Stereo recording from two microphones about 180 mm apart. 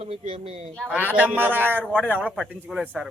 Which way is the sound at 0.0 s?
30° right (ahead or behind).